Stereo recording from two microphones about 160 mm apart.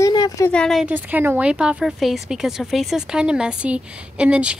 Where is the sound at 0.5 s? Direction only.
5° left (ahead or behind).